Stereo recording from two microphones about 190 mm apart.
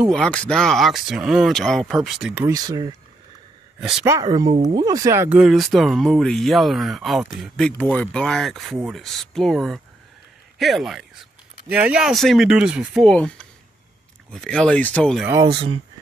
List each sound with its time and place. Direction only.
0.0 s speech: 5° left (ahead or behind)
2.4 s speech: 20° right (ahead or behind)
4.0 s speech: 15° right (ahead or behind)
5.4 s speech: centre (ahead or behind)
15.4 s speech: 30° right (ahead or behind)